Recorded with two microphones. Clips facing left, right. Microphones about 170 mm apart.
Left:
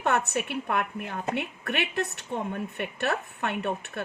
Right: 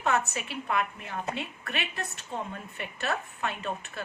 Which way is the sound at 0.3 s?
65° left (ahead or behind).